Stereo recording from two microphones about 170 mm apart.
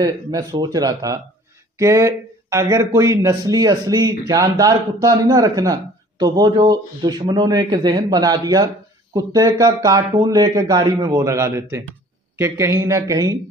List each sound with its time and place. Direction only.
0.0 s a man's voice: 20° right (ahead or behind)